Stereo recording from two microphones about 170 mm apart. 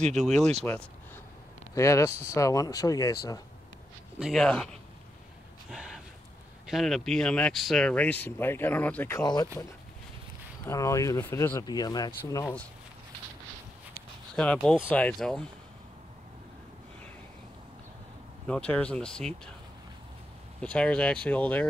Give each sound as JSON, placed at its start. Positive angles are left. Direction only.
{"t": 1.8, "sound": "speech", "side_deg": 15}
{"t": 4.2, "sound": "speech", "side_deg": 0}
{"t": 5.7, "sound": "a sound", "side_deg": 0}
{"t": 6.7, "sound": "speech", "side_deg": 0}
{"t": 9.2, "sound": "speech", "side_deg": 20}
{"t": 10.6, "sound": "speech", "side_deg": 20}
{"t": 14.3, "sound": "speech", "side_deg": 5}
{"t": 18.5, "sound": "speech", "side_deg": 5}
{"t": 20.6, "sound": "speech", "side_deg": 5}